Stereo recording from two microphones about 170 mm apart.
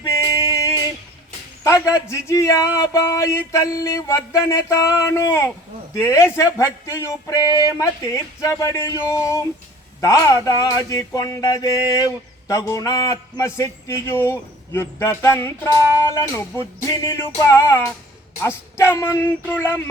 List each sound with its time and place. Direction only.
0.2 s music: 20° left (ahead or behind)
1.6 s a man's voice: 20° left (ahead or behind)
10.0 s a sound: 20° left (ahead or behind)
18.3 s a man's voice: 15° left (ahead or behind)